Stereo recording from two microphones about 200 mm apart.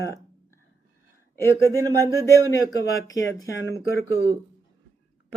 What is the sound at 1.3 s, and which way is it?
Speech, 15° left (ahead or behind).